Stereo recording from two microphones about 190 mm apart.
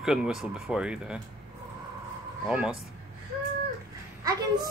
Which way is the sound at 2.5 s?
5° right (ahead or behind).